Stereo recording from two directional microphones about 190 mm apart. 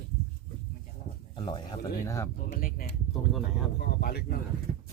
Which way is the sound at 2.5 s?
45° left (ahead or behind).